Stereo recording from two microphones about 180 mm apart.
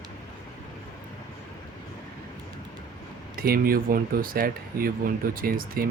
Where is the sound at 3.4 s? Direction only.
55° right (ahead or behind).